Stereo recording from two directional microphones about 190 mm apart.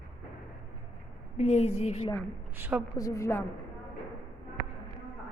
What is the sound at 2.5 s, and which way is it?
Speech, 10° right (ahead or behind).